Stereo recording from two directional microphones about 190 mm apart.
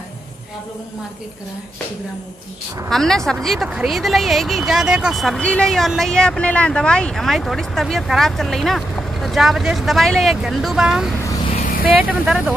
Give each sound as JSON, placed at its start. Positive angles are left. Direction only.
{"t": 2.9, "sound": "speech", "side_deg": 0}
{"t": 11.5, "sound": "a sound", "side_deg": 45}
{"t": 11.8, "sound": "speech", "side_deg": -5}